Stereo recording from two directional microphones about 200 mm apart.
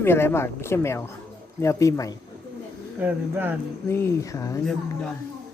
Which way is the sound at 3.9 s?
10° left (ahead or behind).